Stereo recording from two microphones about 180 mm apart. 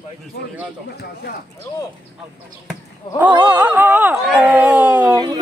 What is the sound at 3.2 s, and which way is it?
Speech, 10° right (ahead or behind).